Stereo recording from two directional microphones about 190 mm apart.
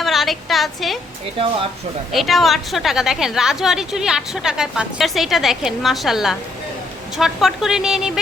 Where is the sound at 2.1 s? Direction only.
Centre (ahead or behind).